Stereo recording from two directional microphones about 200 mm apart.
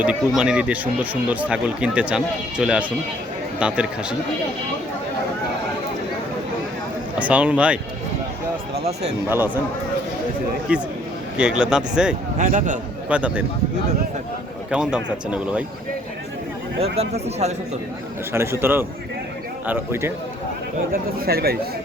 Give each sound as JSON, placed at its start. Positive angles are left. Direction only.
{"t": 0.0, "sound": "speech", "side_deg": -5}
{"t": 7.2, "sound": "speech", "side_deg": -5}
{"t": 9.0, "sound": "speech", "side_deg": -10}
{"t": 10.7, "sound": "speech", "side_deg": -5}
{"t": 12.4, "sound": "speech", "side_deg": -40}
{"t": 13.1, "sound": "speech", "side_deg": -5}
{"t": 14.7, "sound": "speech", "side_deg": -5}
{"t": 16.8, "sound": "speech", "side_deg": -30}
{"t": 18.6, "sound": "speech", "side_deg": -10}
{"t": 20.9, "sound": "speech", "side_deg": -50}